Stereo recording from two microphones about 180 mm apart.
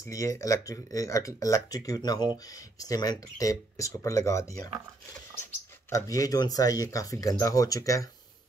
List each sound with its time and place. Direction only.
0.0 s speech: 20° left (ahead or behind)
5.9 s speech: 20° left (ahead or behind)